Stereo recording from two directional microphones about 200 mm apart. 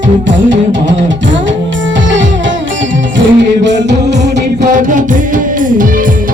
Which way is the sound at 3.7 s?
35° right (ahead or behind).